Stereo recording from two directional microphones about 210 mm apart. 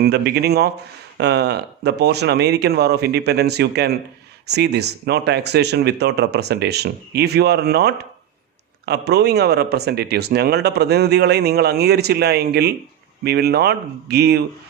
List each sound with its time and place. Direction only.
0.0 s speech: 50° right (ahead or behind)